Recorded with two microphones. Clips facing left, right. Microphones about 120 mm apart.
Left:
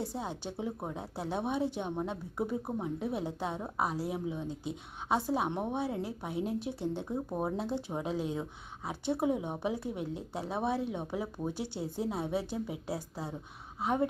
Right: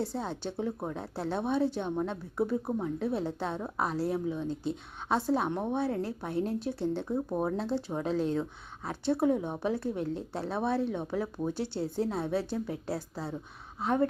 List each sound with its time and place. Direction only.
0.0 s a woman's voice: 15° left (ahead or behind)